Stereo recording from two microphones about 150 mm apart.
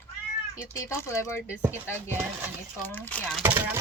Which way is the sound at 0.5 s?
20° left (ahead or behind).